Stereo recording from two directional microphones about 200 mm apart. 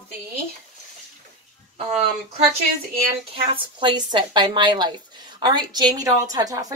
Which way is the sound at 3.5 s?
25° right (ahead or behind).